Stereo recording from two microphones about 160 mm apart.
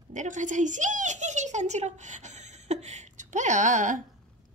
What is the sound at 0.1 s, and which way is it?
A woman's voice, 50° right (ahead or behind).